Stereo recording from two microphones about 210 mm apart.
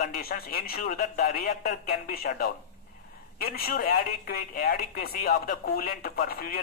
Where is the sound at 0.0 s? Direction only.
45° left (ahead or behind).